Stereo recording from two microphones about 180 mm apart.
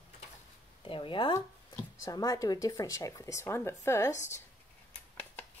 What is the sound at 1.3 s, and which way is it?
Speech, 20° left (ahead or behind).